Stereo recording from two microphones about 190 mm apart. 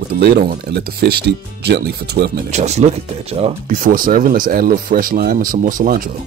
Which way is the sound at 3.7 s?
45° right (ahead or behind).